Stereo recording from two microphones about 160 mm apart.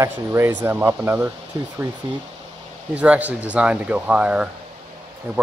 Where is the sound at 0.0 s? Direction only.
15° right (ahead or behind).